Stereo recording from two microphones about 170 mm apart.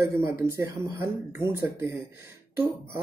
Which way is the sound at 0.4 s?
15° right (ahead or behind).